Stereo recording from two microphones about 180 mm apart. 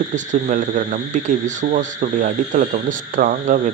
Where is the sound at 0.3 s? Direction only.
45° right (ahead or behind).